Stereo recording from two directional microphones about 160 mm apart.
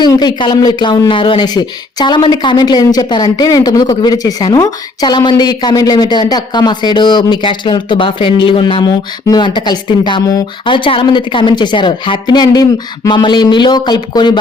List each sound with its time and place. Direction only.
0.0 s speech: 25° left (ahead or behind)